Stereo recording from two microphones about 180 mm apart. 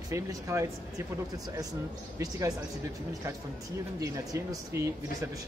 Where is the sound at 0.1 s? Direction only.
15° right (ahead or behind).